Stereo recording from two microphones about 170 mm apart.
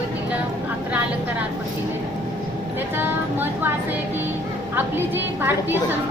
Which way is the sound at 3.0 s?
10° right (ahead or behind).